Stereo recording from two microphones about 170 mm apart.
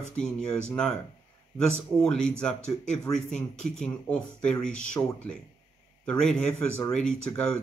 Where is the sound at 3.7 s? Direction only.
5° left (ahead or behind).